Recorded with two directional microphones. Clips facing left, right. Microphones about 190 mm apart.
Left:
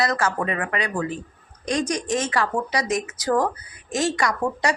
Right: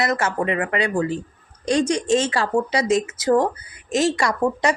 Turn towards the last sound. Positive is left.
turn(degrees=-25)  # may be behind; listen again after turning